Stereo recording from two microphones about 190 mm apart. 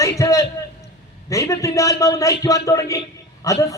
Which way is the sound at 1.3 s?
15° left (ahead or behind).